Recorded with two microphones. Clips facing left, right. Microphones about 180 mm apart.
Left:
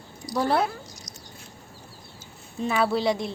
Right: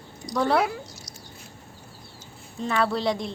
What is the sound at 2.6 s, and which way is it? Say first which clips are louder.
Speech: left 1 dB; 5° left (ahead or behind).